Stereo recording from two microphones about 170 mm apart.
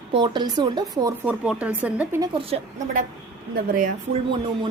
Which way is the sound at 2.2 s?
30° right (ahead or behind).